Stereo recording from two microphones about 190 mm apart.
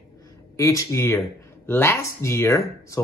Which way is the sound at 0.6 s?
15° left (ahead or behind).